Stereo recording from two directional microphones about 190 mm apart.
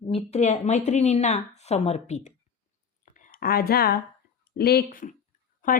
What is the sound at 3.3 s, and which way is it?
Speech, 55° left (ahead or behind).